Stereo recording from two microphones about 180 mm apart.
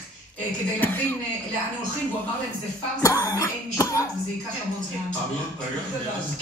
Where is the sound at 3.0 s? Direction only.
20° left (ahead or behind).